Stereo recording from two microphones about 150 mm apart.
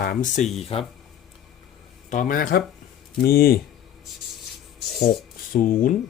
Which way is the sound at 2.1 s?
60° left (ahead or behind).